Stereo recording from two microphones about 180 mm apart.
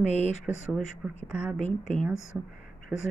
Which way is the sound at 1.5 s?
40° left (ahead or behind).